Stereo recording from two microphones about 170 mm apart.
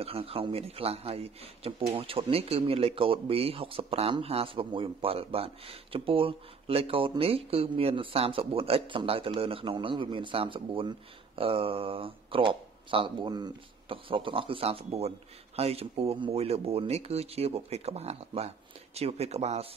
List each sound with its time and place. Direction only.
0.0 s a man's voice: 35° right (ahead or behind)